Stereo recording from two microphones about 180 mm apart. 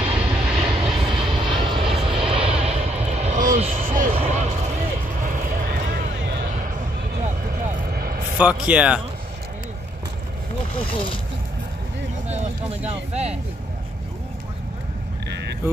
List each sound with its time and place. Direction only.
0.1 s vehicle: 5° right (ahead or behind)
0.6 s vehicle: 30° right (ahead or behind)
3.7 s a sound: 50° right (ahead or behind)
5.2 s vehicle: 45° right (ahead or behind)
7.9 s vehicle: 55° right (ahead or behind)
8.4 s speech: 5° right (ahead or behind)
12.3 s a sound: 40° right (ahead or behind)
13.1 s speech: 35° right (ahead or behind)
15.2 s vehicle: 70° right (ahead or behind)